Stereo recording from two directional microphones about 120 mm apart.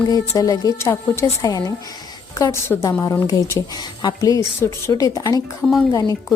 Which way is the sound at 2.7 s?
20° left (ahead or behind).